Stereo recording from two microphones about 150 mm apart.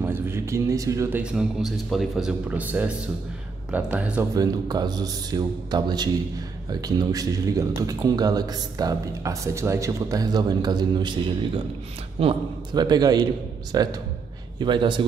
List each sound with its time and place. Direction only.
0.0 s a man's voice: 15° right (ahead or behind)
1.2 s speech: centre (ahead or behind)
4.4 s a man's voice: 25° right (ahead or behind)